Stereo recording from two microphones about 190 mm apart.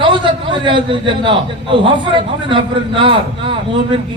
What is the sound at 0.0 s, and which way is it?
A man's voice, 25° right (ahead or behind).